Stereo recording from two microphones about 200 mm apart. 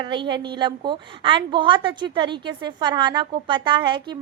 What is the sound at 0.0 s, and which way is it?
A woman's voice, 25° right (ahead or behind).